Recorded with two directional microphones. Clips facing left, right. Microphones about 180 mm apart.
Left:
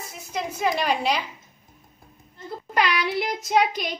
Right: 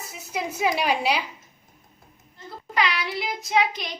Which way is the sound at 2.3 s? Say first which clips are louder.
Left 2 dB; 45° left (ahead or behind).